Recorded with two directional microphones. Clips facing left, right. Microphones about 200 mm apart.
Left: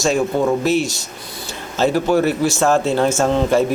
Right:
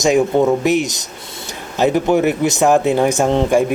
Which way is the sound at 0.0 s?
15° right (ahead or behind).